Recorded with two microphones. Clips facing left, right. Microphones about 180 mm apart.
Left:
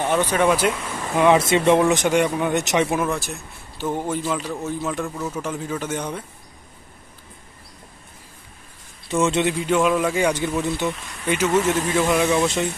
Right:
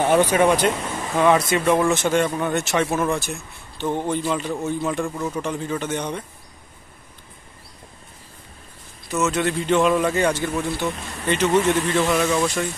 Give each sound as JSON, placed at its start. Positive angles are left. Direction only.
{"t": 0.1, "sound": "speech", "side_deg": -10}
{"t": 0.5, "sound": "speech", "side_deg": 5}
{"t": 1.4, "sound": "speech", "side_deg": 25}
{"t": 3.1, "sound": "a man's voice", "side_deg": 0}
{"t": 9.0, "sound": "a man's voice", "side_deg": 30}
{"t": 9.6, "sound": "speech", "side_deg": 5}